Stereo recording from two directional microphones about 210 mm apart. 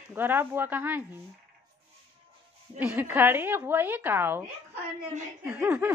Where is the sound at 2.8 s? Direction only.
5° right (ahead or behind).